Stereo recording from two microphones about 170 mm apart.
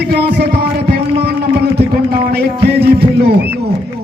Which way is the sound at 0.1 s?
70° right (ahead or behind).